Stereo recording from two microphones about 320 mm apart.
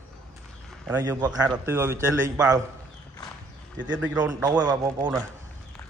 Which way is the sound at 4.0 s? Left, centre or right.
Centre.